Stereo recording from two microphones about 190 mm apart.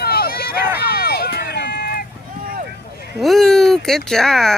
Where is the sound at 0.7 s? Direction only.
55° left (ahead or behind).